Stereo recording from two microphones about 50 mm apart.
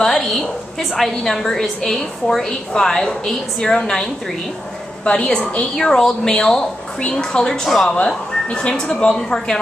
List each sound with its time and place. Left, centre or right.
0.0 s a woman's voice: centre; by 5.3 s left
5.8 s a woman's voice: centre
7.6 s speech: centre
8.5 s a woman's voice: centre